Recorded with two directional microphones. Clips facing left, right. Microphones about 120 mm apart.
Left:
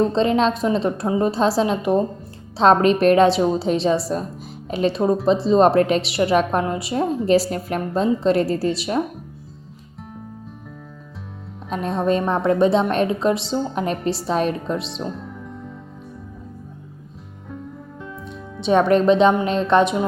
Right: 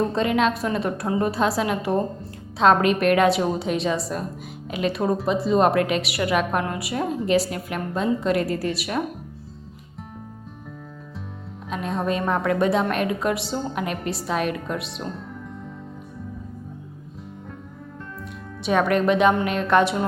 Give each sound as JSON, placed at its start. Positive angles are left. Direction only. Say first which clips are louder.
{"t": 0.1, "sound": "a woman's voice", "louder": "left 3 dB", "side_deg": 30}
{"t": 2.6, "sound": "a woman's voice", "louder": "left 3 dB", "side_deg": 30}
{"t": 7.3, "sound": "a woman's voice", "louder": "left 4 dB", "side_deg": 35}
{"t": 11.7, "sound": "a woman's voice", "louder": "left 5 dB", "side_deg": 35}
{"t": 18.6, "sound": "a woman's voice", "louder": "left 4 dB", "side_deg": 30}